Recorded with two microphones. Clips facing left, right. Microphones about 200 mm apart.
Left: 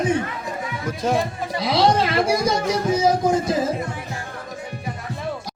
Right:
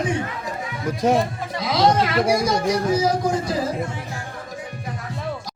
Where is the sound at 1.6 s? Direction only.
30° left (ahead or behind).